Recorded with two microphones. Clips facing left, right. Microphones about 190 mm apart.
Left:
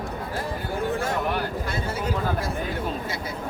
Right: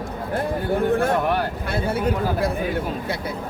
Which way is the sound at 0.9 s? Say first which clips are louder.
Right 4 dB; 60° right (ahead or behind).